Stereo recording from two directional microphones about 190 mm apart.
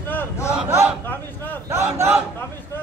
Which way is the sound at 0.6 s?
10° right (ahead or behind).